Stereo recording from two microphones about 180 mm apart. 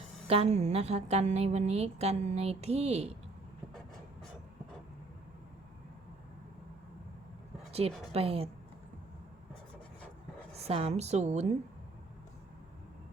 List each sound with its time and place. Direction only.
0.3 s a woman's voice: 35° right (ahead or behind)
7.7 s a woman's voice: 35° right (ahead or behind)
10.5 s a woman's voice: 35° right (ahead or behind)